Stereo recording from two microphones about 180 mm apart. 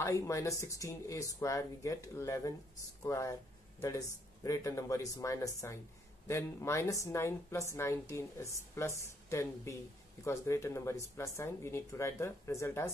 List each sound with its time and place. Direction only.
0.0 s speech: 15° left (ahead or behind)